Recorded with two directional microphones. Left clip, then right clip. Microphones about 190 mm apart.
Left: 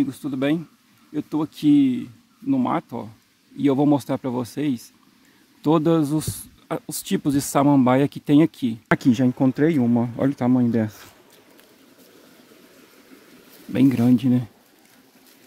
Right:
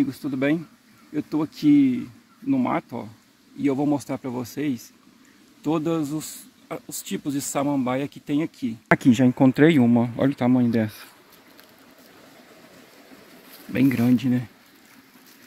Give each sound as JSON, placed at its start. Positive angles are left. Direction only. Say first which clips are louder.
{"t": 0.0, "sound": "speech", "louder": "even", "side_deg": 10}
{"t": 3.6, "sound": "speech", "louder": "left 4 dB", "side_deg": 35}
{"t": 5.6, "sound": "speech", "louder": "left 5 dB", "side_deg": 45}
{"t": 8.8, "sound": "speech", "louder": "right 2 dB", "side_deg": 0}
{"t": 13.7, "sound": "speech", "louder": "left 2 dB", "side_deg": 10}